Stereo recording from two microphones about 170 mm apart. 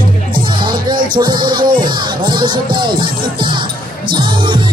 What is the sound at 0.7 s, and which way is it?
Music, 25° right (ahead or behind).